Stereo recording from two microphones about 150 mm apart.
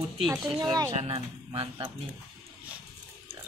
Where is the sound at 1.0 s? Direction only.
45° right (ahead or behind).